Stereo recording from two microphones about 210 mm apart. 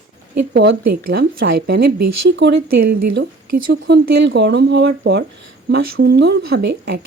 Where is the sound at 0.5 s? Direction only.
50° right (ahead or behind).